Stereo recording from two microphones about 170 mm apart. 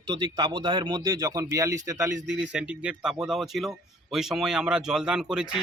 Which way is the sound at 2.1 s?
90° right.